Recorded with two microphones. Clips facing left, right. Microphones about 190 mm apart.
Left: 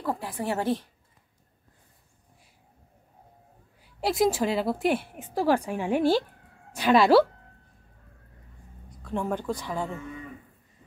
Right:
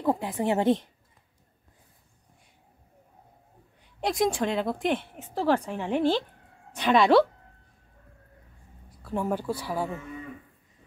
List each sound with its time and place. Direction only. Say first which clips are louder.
0.0 s a woman's voice: right 4 dB; 20° right (ahead or behind)
4.0 s a woman's voice: left 2 dB; 5° left (ahead or behind)
9.0 s speech: right 1 dB; 5° right (ahead or behind)